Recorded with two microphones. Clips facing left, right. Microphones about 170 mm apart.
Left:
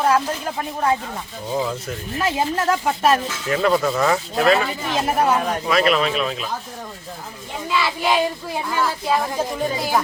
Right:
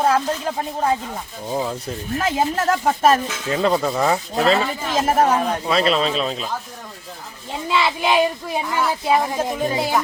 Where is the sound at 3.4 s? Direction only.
25° right (ahead or behind).